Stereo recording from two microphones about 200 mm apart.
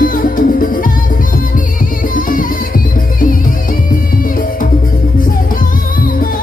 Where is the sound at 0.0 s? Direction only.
45° left (ahead or behind).